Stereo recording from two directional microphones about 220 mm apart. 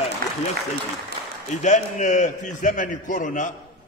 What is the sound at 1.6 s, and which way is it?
A man's voice, 35° left (ahead or behind).